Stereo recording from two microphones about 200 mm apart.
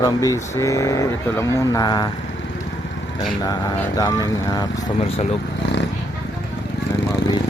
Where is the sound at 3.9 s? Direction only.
20° left (ahead or behind).